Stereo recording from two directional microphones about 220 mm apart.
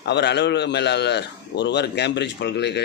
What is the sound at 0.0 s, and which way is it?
A man's voice, 50° left (ahead or behind).